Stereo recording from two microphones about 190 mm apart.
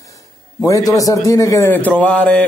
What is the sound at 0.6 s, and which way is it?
A man's voice, 20° left (ahead or behind).